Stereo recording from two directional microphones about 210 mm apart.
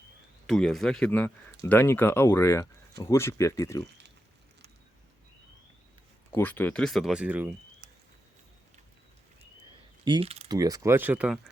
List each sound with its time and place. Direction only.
0.4 s speech: centre (ahead or behind)
6.3 s speech: 10° left (ahead or behind); by 7.5 s 5° right (ahead or behind)
10.0 s mechanisms: 25° right (ahead or behind)
10.6 s speech: 15° right (ahead or behind)